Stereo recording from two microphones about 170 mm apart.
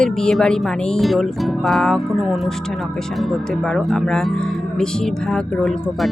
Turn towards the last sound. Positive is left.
turn(degrees=5)  # may be behind; listen again after turning